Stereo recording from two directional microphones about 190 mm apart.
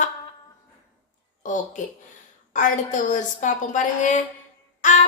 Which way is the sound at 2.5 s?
40° left (ahead or behind).